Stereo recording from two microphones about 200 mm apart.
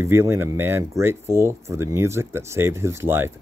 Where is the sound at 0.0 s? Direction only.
10° right (ahead or behind).